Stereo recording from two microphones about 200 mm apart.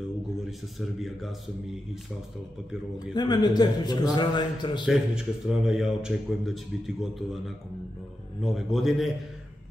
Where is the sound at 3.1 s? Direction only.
20° left (ahead or behind).